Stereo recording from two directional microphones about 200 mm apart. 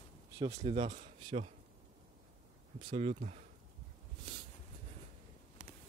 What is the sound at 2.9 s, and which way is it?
Speech, 35° right (ahead or behind).